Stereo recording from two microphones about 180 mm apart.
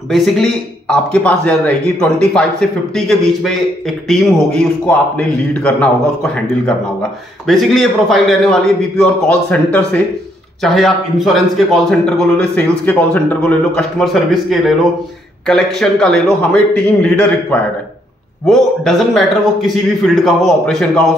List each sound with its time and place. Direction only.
0.1 s a man's voice: centre (ahead or behind)